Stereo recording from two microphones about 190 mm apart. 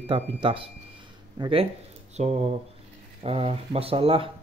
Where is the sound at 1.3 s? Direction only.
30° right (ahead or behind).